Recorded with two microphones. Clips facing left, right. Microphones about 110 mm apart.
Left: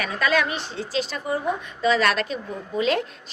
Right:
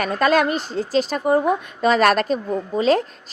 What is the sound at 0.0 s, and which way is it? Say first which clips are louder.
A woman's voice: right 5 dB; 45° right (ahead or behind).